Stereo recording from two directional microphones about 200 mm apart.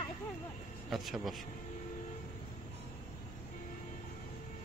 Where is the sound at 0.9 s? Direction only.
Centre (ahead or behind).